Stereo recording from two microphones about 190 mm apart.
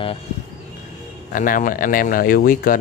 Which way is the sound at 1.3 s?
45° left (ahead or behind).